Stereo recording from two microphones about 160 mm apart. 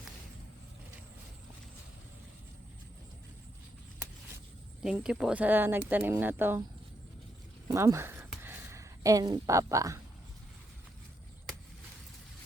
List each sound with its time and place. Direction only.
4.8 s speech: 5° right (ahead or behind)
7.7 s speech: 20° right (ahead or behind)